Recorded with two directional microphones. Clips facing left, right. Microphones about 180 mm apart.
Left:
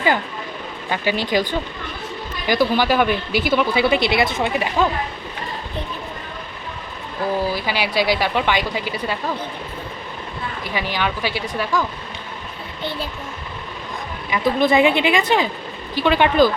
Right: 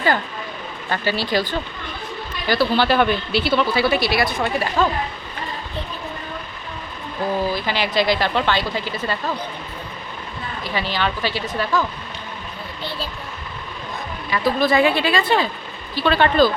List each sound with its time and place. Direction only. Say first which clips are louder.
0.9 s speech: left 1 dB; 15° left (ahead or behind)
7.3 s speech: even; 10° left (ahead or behind)
10.6 s speech: right 1 dB; 15° left (ahead or behind)
14.3 s speech: left 1 dB; 20° left (ahead or behind)